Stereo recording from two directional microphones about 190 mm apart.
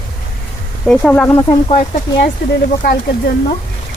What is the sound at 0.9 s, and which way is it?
Speech, 5° left (ahead or behind).